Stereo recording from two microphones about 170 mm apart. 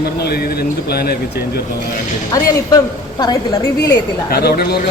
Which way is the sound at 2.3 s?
20° left (ahead or behind).